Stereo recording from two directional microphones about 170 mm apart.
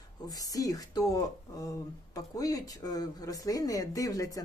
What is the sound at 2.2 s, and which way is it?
Speech, 20° left (ahead or behind).